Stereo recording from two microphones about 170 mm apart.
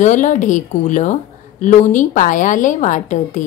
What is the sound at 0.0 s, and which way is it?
A woman's voice, 45° left (ahead or behind).